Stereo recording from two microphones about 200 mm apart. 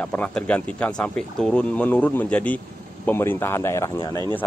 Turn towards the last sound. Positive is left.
turn(degrees=20)  # may be behind; listen again after turning